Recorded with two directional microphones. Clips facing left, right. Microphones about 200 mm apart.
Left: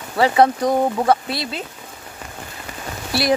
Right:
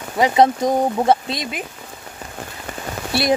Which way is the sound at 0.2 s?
20° right (ahead or behind).